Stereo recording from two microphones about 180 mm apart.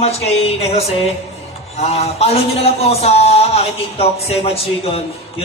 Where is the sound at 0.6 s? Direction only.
35° left (ahead or behind).